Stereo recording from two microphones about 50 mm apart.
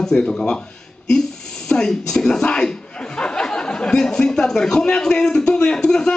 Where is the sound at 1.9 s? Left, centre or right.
Centre.